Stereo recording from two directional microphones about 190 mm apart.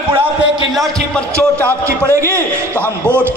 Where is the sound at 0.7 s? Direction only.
Centre (ahead or behind).